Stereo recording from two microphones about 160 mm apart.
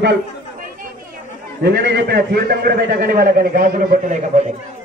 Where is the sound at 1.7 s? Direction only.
75° right (ahead or behind); by 4.2 s 55° right (ahead or behind).